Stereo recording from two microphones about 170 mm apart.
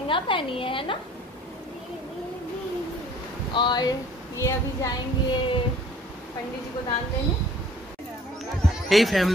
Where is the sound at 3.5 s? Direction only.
25° left (ahead or behind).